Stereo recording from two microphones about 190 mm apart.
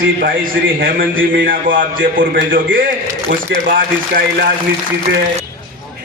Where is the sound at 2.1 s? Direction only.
45° right (ahead or behind).